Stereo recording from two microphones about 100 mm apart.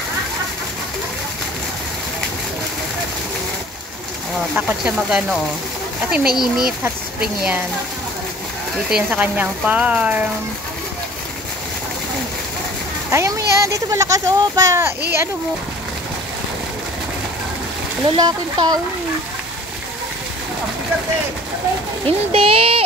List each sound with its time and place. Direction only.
4.6 s speech: 5° right (ahead or behind)
8.9 s speech: 10° right (ahead or behind)
13.1 s speech: 30° right (ahead or behind)
18.1 s speech: 45° right (ahead or behind)
22.0 s a child's voice: 70° right (ahead or behind)